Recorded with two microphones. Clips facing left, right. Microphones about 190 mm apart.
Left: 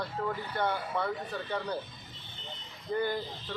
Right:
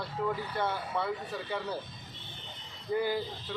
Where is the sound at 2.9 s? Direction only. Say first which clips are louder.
Right 1 dB; 5° right (ahead or behind).